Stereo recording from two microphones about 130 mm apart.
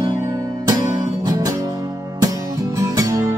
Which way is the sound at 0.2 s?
25° right (ahead or behind).